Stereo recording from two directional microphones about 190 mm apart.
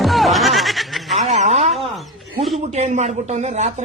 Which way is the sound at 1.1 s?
35° right (ahead or behind).